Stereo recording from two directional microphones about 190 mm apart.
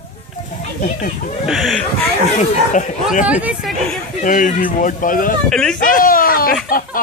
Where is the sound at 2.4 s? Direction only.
40° left (ahead or behind).